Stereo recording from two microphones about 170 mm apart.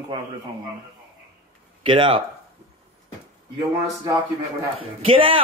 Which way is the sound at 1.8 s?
30° right (ahead or behind).